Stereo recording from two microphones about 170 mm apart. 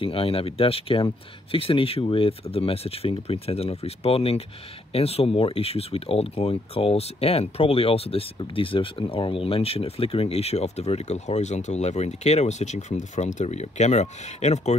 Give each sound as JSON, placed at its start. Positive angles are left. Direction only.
{"t": 0.0, "sound": "speech", "side_deg": 35}